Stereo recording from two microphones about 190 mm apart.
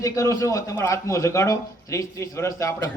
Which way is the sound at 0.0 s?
15° left (ahead or behind).